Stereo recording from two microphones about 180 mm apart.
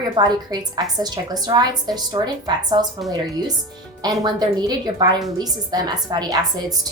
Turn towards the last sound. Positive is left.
turn(degrees=-20)  # may be behind; listen again after turning